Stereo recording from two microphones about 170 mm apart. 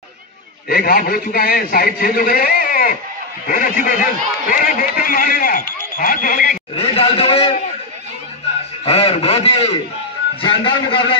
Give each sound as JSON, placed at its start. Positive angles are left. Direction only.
{"t": 0.7, "sound": "a man's voice", "side_deg": 60}
{"t": 6.7, "sound": "a man's voice", "side_deg": 35}
{"t": 8.8, "sound": "a man's voice", "side_deg": 35}